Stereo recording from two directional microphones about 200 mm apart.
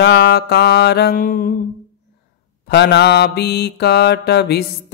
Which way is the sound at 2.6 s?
60° left (ahead or behind).